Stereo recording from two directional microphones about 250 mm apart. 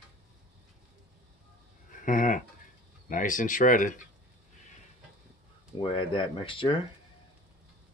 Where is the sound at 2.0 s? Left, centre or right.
Left.